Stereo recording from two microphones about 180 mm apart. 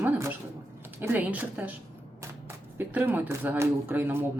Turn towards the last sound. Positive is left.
turn(degrees=-10)  # may be behind; listen again after turning